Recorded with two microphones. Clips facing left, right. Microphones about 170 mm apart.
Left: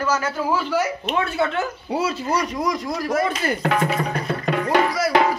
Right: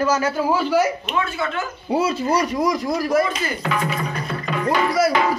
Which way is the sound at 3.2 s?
55° left (ahead or behind).